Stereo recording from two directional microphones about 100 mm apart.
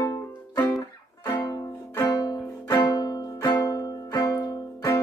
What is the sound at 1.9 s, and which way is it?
Music, 35° left (ahead or behind).